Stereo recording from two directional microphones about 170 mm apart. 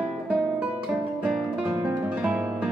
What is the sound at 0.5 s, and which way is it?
Music, centre (ahead or behind).